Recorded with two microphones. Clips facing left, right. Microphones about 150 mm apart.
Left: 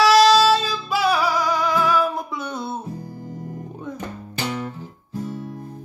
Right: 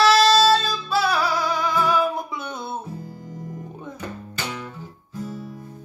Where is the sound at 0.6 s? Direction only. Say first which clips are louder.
Even; 10° left (ahead or behind).